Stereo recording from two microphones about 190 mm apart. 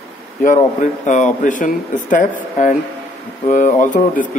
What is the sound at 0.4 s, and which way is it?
Speech, 40° left (ahead or behind).